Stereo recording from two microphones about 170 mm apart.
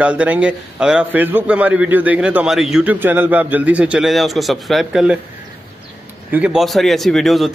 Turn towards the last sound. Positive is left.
turn(degrees=0)  # may be behind; listen again after turning